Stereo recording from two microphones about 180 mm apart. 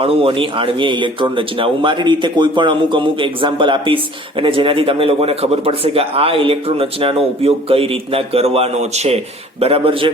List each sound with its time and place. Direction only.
0.0 s a man's voice: 30° right (ahead or behind)